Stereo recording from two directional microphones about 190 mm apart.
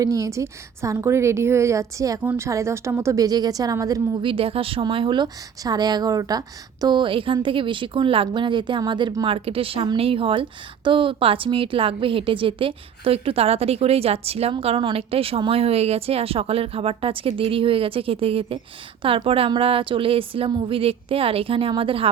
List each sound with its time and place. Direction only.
0.0 s a woman's voice: 15° right (ahead or behind)